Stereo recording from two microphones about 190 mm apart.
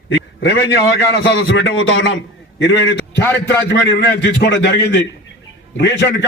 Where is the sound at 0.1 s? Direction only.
65° left (ahead or behind).